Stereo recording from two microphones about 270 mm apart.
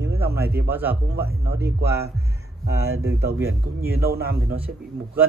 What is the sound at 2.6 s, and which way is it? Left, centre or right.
Speech, right.